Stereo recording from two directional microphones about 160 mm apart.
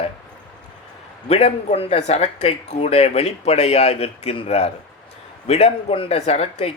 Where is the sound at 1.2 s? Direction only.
40° left (ahead or behind).